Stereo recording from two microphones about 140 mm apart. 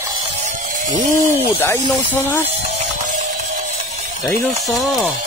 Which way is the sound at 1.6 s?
15° left (ahead or behind).